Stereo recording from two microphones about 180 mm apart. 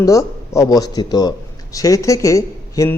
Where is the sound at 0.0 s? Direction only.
20° left (ahead or behind).